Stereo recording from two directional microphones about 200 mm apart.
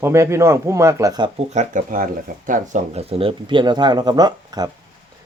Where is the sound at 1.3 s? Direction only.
35° right (ahead or behind); by 4.7 s 20° right (ahead or behind).